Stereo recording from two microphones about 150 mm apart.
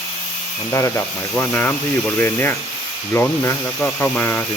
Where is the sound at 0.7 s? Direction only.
15° left (ahead or behind).